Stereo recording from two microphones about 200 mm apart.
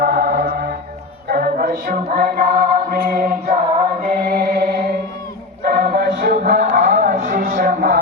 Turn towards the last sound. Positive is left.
turn(degrees=-45)  # may be behind; listen again after turning